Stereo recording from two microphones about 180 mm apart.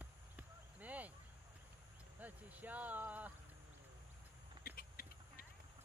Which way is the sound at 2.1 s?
10° right (ahead or behind).